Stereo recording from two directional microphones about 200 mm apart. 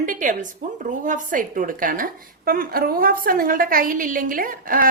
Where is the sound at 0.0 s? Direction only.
40° right (ahead or behind).